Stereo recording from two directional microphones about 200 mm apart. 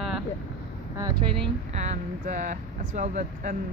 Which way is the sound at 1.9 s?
40° right (ahead or behind).